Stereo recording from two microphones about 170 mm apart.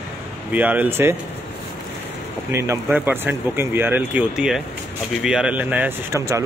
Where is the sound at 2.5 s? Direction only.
15° right (ahead or behind).